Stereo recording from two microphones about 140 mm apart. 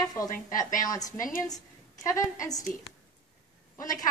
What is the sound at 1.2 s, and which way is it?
Speech, 75° left (ahead or behind).